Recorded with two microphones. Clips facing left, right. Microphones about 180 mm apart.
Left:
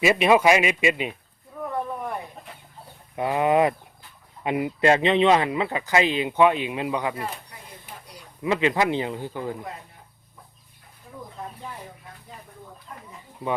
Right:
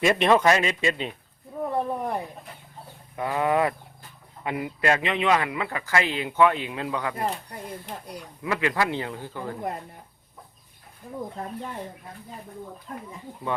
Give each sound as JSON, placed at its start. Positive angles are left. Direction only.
{"t": 0.0, "sound": "a man's voice", "side_deg": 5}
{"t": 1.6, "sound": "a sound", "side_deg": -30}
{"t": 3.2, "sound": "speech", "side_deg": 20}
{"t": 8.4, "sound": "speech", "side_deg": 20}